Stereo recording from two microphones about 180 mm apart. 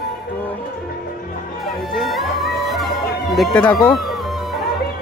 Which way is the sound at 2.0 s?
Centre (ahead or behind).